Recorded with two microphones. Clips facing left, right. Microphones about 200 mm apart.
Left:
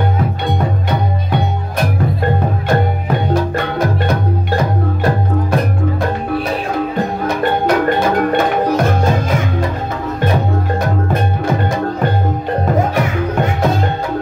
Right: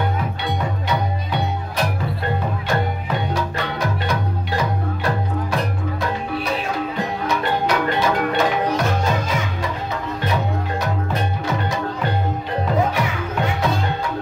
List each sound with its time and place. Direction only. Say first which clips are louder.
0.5 s music: left 5 dB; 50° left (ahead or behind)
2.7 s music: left 6 dB; 55° left (ahead or behind)